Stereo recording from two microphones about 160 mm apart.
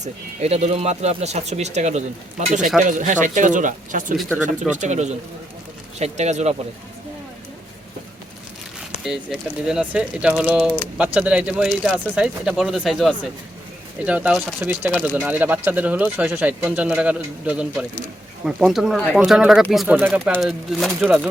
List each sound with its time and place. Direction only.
0.0 s speech: 40° right (ahead or behind)
9.0 s speech: 5° right (ahead or behind)
20.0 s speech: 10° right (ahead or behind)
20.3 s speech: centre (ahead or behind)